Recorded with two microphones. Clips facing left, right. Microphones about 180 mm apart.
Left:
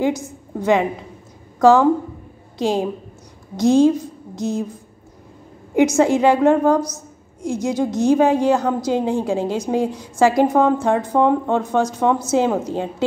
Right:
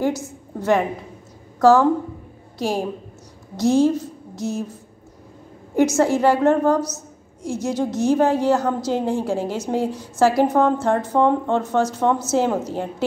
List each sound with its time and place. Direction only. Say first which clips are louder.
0.0 s a woman's voice: left 2 dB; 15° left (ahead or behind)
5.8 s a woman's voice: left 2 dB; 15° left (ahead or behind)